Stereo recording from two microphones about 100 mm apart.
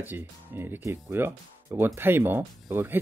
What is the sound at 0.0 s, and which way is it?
Speech, 20° right (ahead or behind).